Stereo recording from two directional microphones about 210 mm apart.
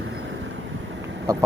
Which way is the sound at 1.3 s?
15° right (ahead or behind).